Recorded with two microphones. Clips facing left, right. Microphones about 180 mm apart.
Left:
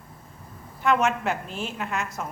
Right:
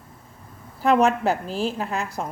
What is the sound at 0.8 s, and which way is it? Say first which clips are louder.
A woman's voice: right 4 dB; 35° right (ahead or behind).